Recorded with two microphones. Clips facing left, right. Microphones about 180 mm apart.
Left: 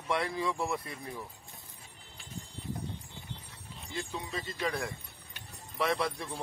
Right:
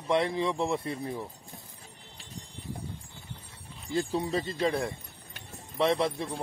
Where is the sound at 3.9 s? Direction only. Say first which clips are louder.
Right 9 dB; 35° right (ahead or behind).